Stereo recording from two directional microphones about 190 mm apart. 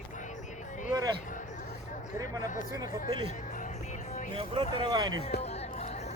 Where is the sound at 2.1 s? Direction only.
20° right (ahead or behind).